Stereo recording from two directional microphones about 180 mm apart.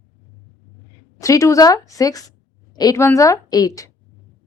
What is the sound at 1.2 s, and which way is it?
A woman's voice, 15° left (ahead or behind).